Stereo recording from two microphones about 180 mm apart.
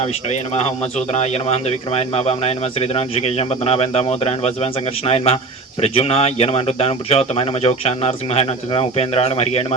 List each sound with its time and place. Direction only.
0.5 s speech: 35° left (ahead or behind)